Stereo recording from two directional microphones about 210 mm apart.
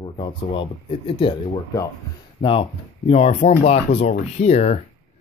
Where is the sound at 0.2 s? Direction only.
25° left (ahead or behind).